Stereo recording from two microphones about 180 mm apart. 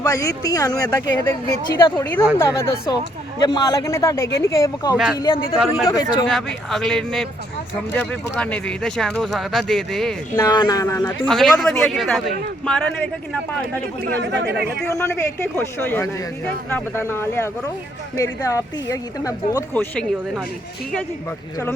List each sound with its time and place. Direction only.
0.0 s speech: 20° left (ahead or behind)
2.4 s speech: 15° left (ahead or behind)
5.5 s speech: centre (ahead or behind)
5.9 s speech: 20° left (ahead or behind)
6.2 s speech: centre (ahead or behind)
10.3 s speech: 20° left (ahead or behind)
11.3 s speech: centre (ahead or behind)
14.2 s speech: 70° right (ahead or behind)
14.8 s speech: 15° left (ahead or behind)
19.7 s speech: 5° left (ahead or behind)